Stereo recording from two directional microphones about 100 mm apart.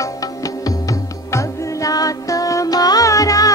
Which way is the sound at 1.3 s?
35° left (ahead or behind).